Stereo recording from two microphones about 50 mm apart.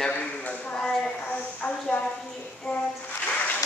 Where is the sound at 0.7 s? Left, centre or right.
Centre.